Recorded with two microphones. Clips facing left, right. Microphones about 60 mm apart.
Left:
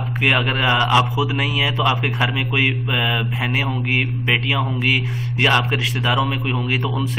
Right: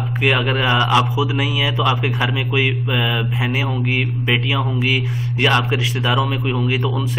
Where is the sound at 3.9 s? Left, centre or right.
Centre.